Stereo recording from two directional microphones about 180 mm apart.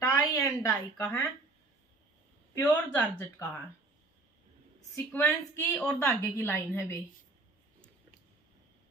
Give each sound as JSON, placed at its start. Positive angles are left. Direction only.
{"t": 0.0, "sound": "a sound", "side_deg": 20}
{"t": 2.5, "sound": "speech", "side_deg": 10}
{"t": 4.9, "sound": "speech", "side_deg": 15}